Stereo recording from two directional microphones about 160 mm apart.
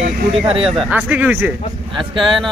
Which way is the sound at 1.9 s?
30° right (ahead or behind).